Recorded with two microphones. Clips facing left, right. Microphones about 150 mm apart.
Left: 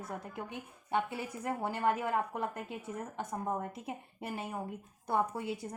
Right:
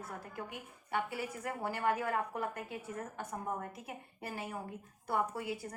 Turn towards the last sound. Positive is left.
turn(degrees=20)  # may be behind; listen again after turning